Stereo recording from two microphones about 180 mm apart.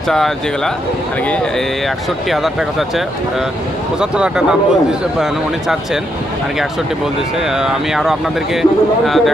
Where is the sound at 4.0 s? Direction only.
5° right (ahead or behind).